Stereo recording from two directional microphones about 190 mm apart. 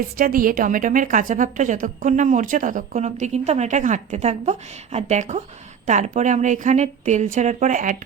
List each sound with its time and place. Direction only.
0.2 s a woman's voice: 50° right (ahead or behind)